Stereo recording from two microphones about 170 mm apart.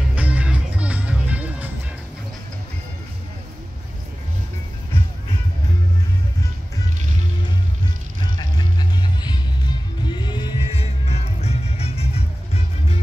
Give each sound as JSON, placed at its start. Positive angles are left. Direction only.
{"t": 0.1, "sound": "music", "side_deg": -10}
{"t": 8.4, "sound": "music", "side_deg": 25}